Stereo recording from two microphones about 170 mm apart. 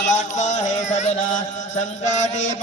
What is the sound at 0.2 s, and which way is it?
Music, 45° left (ahead or behind).